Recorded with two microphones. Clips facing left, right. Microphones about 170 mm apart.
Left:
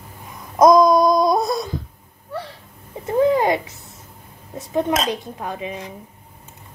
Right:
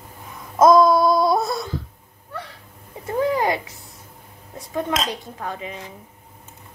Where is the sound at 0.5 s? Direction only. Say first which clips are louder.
Left 1 dB; 15° left (ahead or behind).